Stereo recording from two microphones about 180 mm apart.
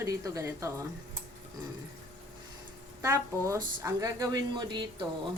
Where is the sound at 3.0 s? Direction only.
15° right (ahead or behind).